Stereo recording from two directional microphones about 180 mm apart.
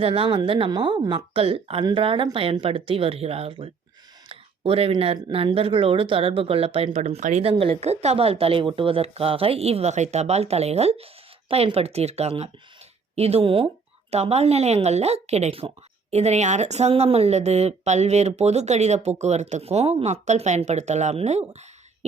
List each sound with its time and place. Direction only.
0.0 s a woman's voice: 30° right (ahead or behind)
7.5 s a woman's voice: 30° right (ahead or behind)